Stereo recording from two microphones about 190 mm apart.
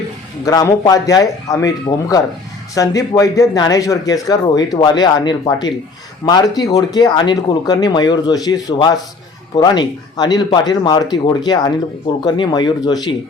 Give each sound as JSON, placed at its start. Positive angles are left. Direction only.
{"t": 0.4, "sound": "speech", "side_deg": 20}